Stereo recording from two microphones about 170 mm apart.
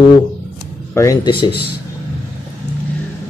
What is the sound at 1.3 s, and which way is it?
Speech, 30° left (ahead or behind).